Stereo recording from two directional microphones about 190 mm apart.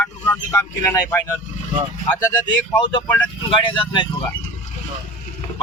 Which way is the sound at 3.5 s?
25° left (ahead or behind).